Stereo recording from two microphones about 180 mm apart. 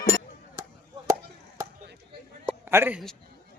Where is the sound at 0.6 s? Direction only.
20° right (ahead or behind).